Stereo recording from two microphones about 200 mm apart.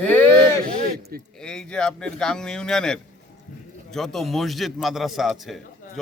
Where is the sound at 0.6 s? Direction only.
50° right (ahead or behind).